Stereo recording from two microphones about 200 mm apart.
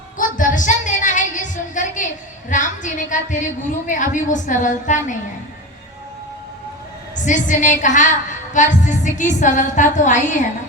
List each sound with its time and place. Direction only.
0.2 s a sound: 40° left (ahead or behind)
2.5 s a woman's voice: 40° left (ahead or behind)
7.3 s a woman's voice: 40° left (ahead or behind)